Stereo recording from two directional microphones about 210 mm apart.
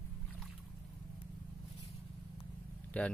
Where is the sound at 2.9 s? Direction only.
5° left (ahead or behind).